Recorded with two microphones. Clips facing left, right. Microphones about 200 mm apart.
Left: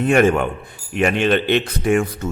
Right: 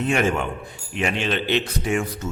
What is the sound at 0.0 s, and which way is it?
Speech, 55° left (ahead or behind).